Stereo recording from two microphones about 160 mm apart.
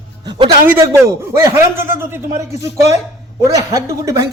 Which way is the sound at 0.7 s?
15° right (ahead or behind).